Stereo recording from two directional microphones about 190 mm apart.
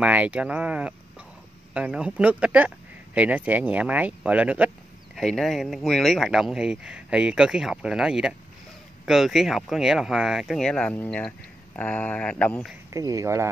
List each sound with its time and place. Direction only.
0.0 s speech: 5° right (ahead or behind)
12.9 s speech: 15° right (ahead or behind)